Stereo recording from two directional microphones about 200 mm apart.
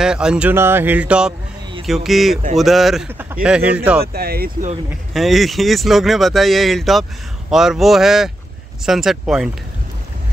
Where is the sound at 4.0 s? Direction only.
50° right (ahead or behind).